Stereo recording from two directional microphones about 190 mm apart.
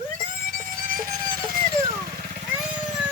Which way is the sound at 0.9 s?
45° right (ahead or behind).